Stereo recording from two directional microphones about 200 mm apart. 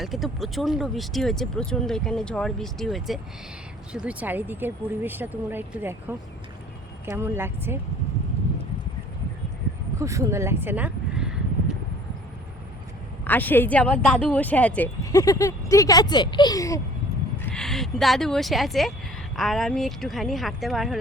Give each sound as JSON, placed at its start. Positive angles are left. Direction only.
{"t": 0.0, "sound": "speech", "side_deg": 0}
{"t": 10.0, "sound": "speech", "side_deg": -15}
{"t": 13.2, "sound": "speech", "side_deg": 10}
{"t": 17.4, "sound": "speech", "side_deg": 5}